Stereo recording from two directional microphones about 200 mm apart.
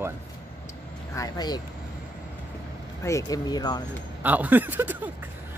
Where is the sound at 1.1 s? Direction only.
20° left (ahead or behind).